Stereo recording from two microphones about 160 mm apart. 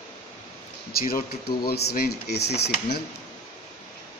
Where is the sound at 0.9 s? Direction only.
65° left (ahead or behind); by 3.0 s 90° left.